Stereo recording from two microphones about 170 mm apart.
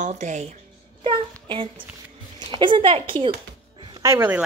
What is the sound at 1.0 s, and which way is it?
A woman's voice, 30° right (ahead or behind).